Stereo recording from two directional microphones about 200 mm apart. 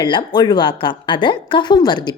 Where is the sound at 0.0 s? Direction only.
25° left (ahead or behind).